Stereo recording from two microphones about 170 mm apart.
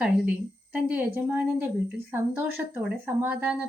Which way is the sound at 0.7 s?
10° right (ahead or behind).